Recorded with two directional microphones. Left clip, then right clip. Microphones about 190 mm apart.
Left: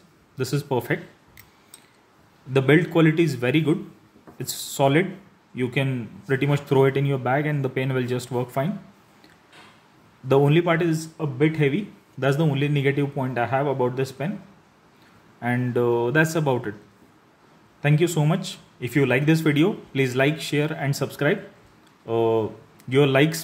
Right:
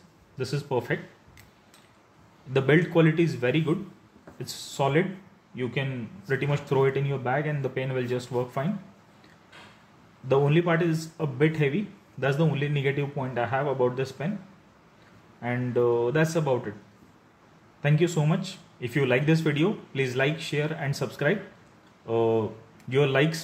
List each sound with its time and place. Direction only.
0.4 s speech: 30° left (ahead or behind)
2.5 s speech: 20° left (ahead or behind)
10.2 s speech: 25° left (ahead or behind)
11.1 s speech: 10° left (ahead or behind)
15.4 s speech: 30° left (ahead or behind)
17.8 s speech: 20° left (ahead or behind)